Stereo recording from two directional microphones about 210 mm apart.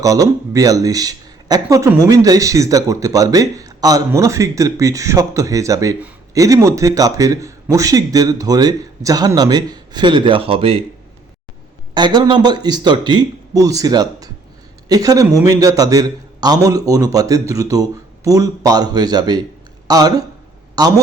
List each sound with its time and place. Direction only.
0.0 s speech: 15° right (ahead or behind)
11.9 s a man's voice: 20° right (ahead or behind)